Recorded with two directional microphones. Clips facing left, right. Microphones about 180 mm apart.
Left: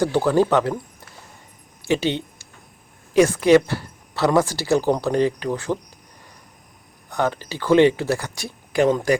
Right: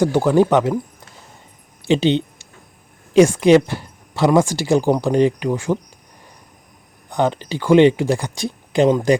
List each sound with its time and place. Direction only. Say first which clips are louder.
0.1 s speech: right 3 dB; 15° right (ahead or behind)
1.9 s speech: right 5 dB; 20° right (ahead or behind)
7.1 s speech: right 4 dB; 20° right (ahead or behind)